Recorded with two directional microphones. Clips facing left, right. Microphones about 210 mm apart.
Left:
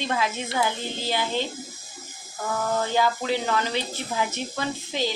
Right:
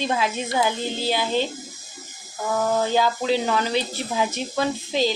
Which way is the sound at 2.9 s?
15° right (ahead or behind).